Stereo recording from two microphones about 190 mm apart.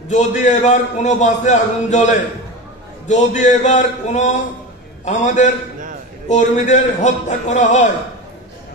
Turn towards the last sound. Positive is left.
turn(degrees=40)  # may be behind; listen again after turning